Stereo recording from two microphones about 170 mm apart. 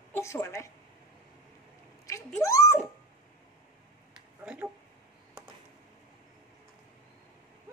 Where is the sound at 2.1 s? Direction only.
20° left (ahead or behind).